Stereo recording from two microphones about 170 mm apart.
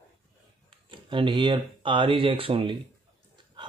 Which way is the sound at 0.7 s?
30° right (ahead or behind).